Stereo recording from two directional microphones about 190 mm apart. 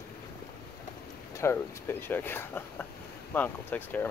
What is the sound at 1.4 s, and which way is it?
Speech, 15° left (ahead or behind).